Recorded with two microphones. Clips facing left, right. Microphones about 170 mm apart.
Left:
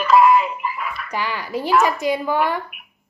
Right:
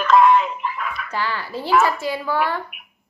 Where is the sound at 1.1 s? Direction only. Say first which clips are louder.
Left 2 dB; 15° left (ahead or behind).